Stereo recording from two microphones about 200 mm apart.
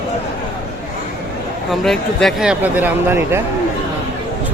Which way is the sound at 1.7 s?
Centre (ahead or behind).